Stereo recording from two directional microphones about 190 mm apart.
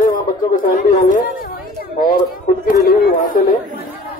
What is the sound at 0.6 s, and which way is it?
A woman's voice, 50° left (ahead or behind).